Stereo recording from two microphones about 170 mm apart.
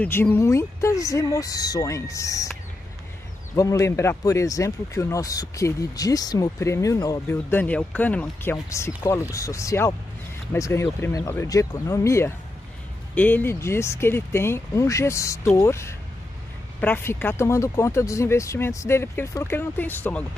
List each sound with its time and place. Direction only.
0.0 s speech: 10° left (ahead or behind)
3.5 s speech: 20° left (ahead or behind)